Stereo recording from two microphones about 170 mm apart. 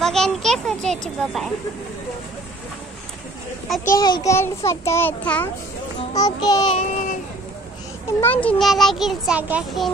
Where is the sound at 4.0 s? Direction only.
25° left (ahead or behind).